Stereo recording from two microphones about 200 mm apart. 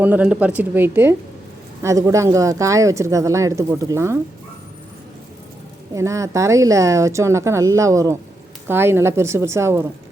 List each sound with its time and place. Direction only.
0.0 s speech: 10° right (ahead or behind)
5.9 s speech: 15° right (ahead or behind)